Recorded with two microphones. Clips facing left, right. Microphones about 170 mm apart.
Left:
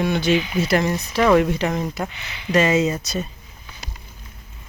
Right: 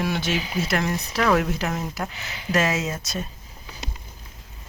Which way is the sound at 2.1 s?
40° right (ahead or behind).